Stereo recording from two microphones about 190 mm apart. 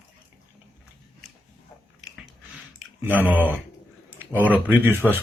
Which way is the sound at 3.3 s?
10° right (ahead or behind).